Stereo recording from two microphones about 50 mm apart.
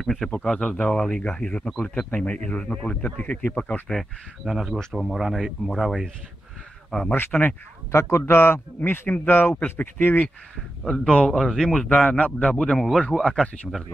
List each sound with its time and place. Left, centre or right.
0.0 s speech: centre; by 1.6 s left
1.6 s speech: centre
2.2 s speech: left
3.9 s speech: centre
7.3 s speech: centre
7.9 s a man's voice: left
10.9 s speech: centre
11.3 s speech: centre